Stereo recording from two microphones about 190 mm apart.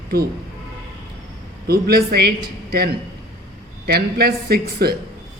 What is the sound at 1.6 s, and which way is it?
Speech, 55° right (ahead or behind).